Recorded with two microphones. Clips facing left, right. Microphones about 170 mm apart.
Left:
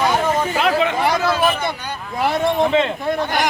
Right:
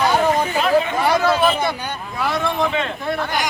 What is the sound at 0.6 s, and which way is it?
Hubbub, 85° left.